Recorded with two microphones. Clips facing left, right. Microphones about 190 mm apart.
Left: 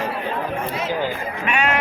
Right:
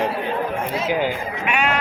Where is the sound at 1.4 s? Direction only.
5° right (ahead or behind).